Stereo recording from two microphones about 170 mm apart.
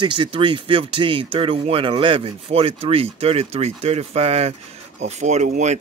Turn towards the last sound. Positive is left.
turn(degrees=-45)  # may be behind; listen again after turning